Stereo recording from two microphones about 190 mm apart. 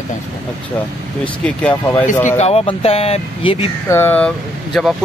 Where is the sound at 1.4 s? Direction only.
5° left (ahead or behind).